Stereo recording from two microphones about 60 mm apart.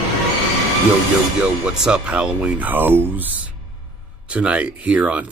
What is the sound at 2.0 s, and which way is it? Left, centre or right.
Speech, right.